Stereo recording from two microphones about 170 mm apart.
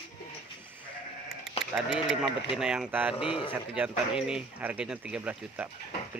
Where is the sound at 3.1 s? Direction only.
30° left (ahead or behind).